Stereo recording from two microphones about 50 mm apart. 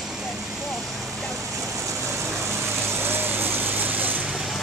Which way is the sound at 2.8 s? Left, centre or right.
Right.